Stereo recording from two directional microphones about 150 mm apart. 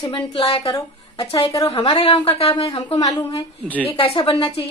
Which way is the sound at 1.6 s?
40° left (ahead or behind).